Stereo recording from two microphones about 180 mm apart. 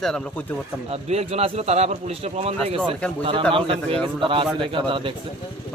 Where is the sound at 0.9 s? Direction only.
35° right (ahead or behind).